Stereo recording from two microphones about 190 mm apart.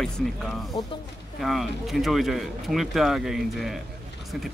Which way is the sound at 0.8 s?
25° left (ahead or behind).